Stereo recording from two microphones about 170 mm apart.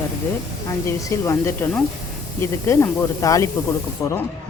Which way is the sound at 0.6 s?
15° left (ahead or behind).